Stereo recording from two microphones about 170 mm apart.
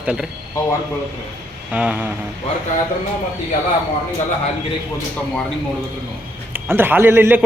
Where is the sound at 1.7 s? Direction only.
5° right (ahead or behind).